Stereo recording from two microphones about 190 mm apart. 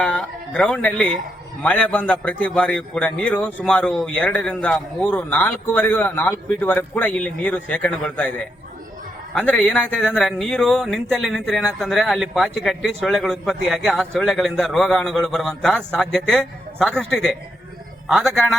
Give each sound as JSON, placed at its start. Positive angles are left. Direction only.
{"t": 0.0, "sound": "a sound", "side_deg": 5}
{"t": 1.6, "sound": "a man's voice", "side_deg": 10}
{"t": 9.3, "sound": "a man's voice", "side_deg": 5}